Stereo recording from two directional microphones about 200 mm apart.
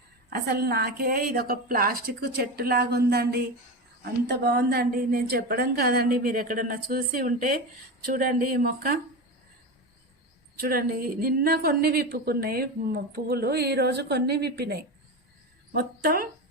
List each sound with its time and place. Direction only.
0.3 s a woman's voice: 50° right (ahead or behind)
10.6 s a woman's voice: 50° right (ahead or behind)